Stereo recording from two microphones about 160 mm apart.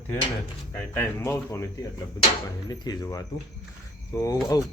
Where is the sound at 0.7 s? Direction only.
15° left (ahead or behind).